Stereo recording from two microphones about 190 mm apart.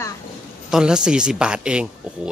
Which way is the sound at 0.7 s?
5° right (ahead or behind).